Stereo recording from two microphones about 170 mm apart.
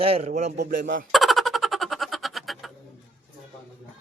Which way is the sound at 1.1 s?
Centre (ahead or behind).